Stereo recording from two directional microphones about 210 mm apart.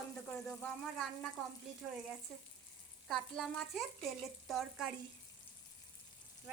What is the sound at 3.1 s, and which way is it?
Speech, centre (ahead or behind).